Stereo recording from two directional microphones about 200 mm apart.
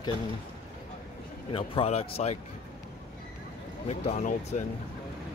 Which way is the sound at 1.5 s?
25° left (ahead or behind).